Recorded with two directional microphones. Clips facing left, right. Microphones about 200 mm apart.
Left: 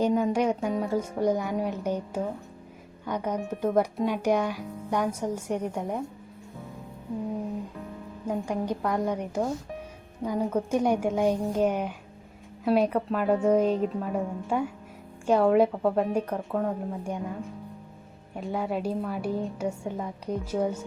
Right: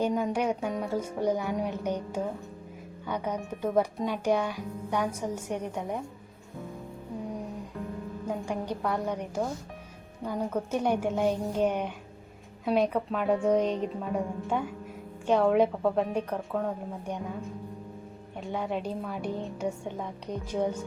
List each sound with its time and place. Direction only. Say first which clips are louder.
0.0 s speech: left 3 dB; 10° left (ahead or behind)
3.2 s speech: left 4 dB; 10° left (ahead or behind)
8.3 s a woman's voice: left 4 dB; 5° left (ahead or behind)
18.3 s speech: left 2 dB; 5° left (ahead or behind)